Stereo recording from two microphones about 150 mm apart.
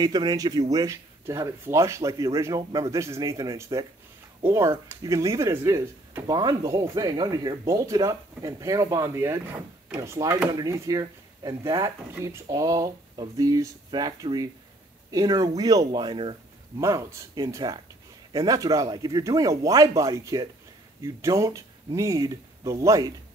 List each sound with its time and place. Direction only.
0.0 s a man's voice: 25° right (ahead or behind)
16.8 s speech: 20° right (ahead or behind)